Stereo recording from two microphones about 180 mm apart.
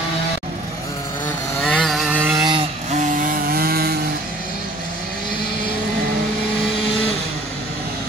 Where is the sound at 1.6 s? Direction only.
5° left (ahead or behind).